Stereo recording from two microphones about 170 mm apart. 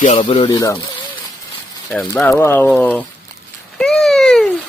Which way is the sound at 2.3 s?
10° left (ahead or behind).